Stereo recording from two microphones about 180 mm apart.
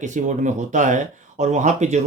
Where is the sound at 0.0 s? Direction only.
40° right (ahead or behind).